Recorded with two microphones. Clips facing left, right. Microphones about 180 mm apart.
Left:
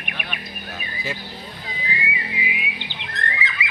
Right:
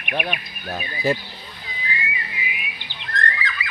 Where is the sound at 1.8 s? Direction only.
20° left (ahead or behind).